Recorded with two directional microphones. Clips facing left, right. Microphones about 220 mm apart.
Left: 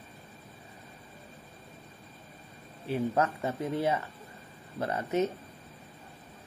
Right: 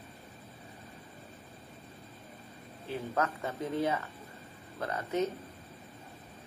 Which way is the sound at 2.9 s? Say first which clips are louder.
Left 5 dB; 25° left (ahead or behind).